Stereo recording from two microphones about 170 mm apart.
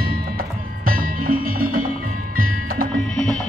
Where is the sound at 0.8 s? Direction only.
60° right (ahead or behind).